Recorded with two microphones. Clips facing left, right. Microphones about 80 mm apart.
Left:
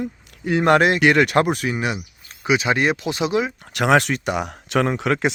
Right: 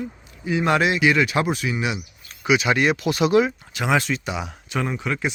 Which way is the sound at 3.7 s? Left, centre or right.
Left.